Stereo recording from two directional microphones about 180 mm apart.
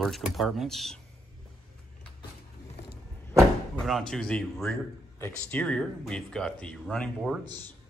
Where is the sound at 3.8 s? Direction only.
Centre (ahead or behind).